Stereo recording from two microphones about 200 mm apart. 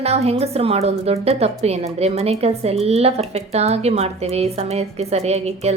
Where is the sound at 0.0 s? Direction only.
30° right (ahead or behind).